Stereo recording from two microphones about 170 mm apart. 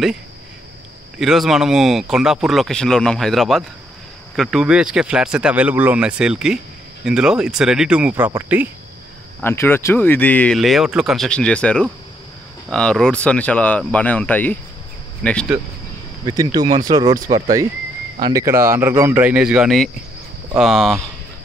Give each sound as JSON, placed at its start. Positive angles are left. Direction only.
{"t": 1.1, "sound": "speech", "side_deg": 0}
{"t": 9.4, "sound": "speech", "side_deg": 15}
{"t": 16.3, "sound": "speech", "side_deg": -20}